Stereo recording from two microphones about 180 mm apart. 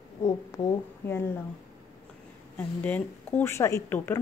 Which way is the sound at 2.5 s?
10° left (ahead or behind).